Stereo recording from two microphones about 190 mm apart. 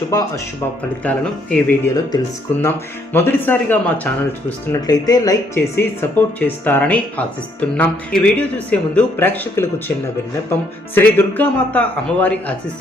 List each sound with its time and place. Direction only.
0.1 s speech: 20° left (ahead or behind)
1.0 s speech: 10° left (ahead or behind)
10.9 s speech: 10° left (ahead or behind)